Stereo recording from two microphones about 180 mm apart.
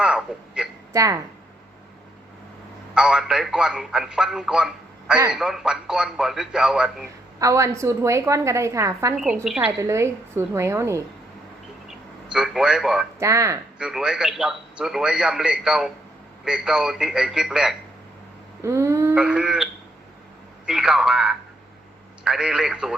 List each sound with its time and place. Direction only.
0.0 s a sound: 5° right (ahead or behind)
0.9 s a woman's voice: 15° right (ahead or behind)
2.9 s speech: 5° right (ahead or behind)
7.3 s a woman's voice: 15° right (ahead or behind)
9.1 s speech: 5° right (ahead or behind)
9.8 s a woman's voice: 15° right (ahead or behind)
11.9 s a man's voice: 5° right (ahead or behind)
13.1 s speech: 15° right (ahead or behind)
13.7 s speech: 5° right (ahead or behind)
18.6 s a sound: 15° right (ahead or behind)
19.1 s speech: 5° right (ahead or behind)
20.7 s speech: 5° right (ahead or behind)